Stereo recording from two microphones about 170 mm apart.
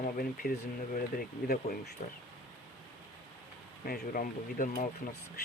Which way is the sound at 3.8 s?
60° left (ahead or behind).